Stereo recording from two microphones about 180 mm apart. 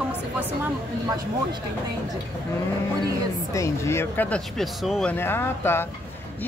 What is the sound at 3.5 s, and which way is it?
Speech, 15° left (ahead or behind).